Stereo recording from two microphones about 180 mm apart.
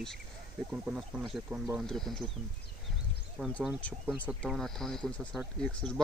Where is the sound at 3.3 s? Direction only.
Centre (ahead or behind).